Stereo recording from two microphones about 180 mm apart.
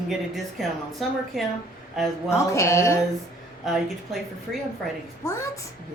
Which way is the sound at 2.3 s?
15° left (ahead or behind).